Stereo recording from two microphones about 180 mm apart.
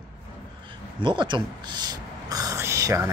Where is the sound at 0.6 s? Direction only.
25° right (ahead or behind).